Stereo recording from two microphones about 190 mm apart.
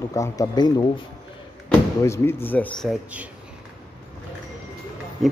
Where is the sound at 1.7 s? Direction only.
15° left (ahead or behind).